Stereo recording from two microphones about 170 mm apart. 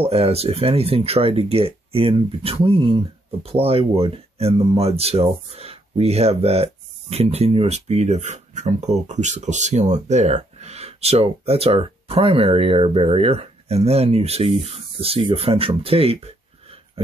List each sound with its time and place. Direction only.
0.0 s speech: 35° right (ahead or behind)